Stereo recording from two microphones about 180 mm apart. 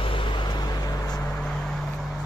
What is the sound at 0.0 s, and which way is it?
Vehicle, 30° left (ahead or behind).